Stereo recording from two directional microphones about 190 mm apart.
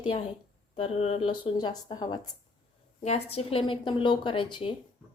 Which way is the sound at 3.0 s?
35° left (ahead or behind).